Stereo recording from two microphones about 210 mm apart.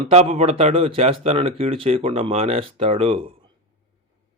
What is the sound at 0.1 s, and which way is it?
A man's voice, 30° right (ahead or behind).